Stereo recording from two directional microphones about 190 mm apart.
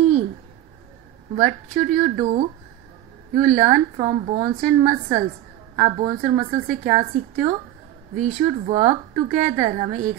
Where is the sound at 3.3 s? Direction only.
40° right (ahead or behind).